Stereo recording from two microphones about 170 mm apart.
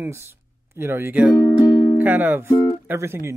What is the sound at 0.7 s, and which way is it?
Speech, 15° right (ahead or behind).